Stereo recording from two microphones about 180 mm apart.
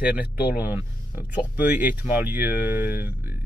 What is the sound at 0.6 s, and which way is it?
A man's voice, 10° right (ahead or behind).